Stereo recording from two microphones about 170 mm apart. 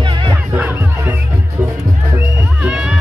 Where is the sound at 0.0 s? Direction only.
25° right (ahead or behind).